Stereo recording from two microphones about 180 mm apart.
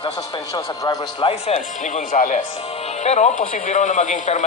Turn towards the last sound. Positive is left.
turn(degrees=40)  # may be behind; listen again after turning